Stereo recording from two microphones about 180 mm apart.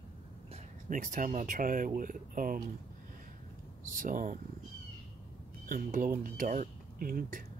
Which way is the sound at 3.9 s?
50° right (ahead or behind).